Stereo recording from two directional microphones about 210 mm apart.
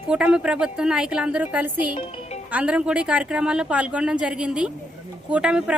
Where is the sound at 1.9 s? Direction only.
30° left (ahead or behind).